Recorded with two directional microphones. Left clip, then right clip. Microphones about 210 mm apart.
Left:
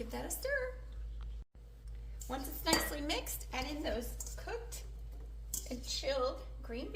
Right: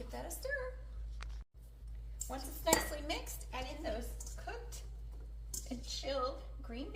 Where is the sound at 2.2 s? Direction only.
35° left (ahead or behind).